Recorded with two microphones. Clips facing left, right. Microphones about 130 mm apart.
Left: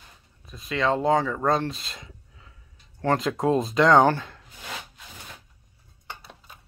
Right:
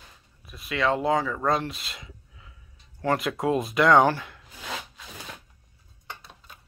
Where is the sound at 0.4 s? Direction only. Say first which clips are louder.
Left 1 dB; 30° left (ahead or behind).